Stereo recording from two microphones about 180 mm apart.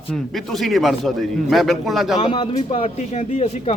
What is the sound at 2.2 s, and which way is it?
Speech, 30° left (ahead or behind).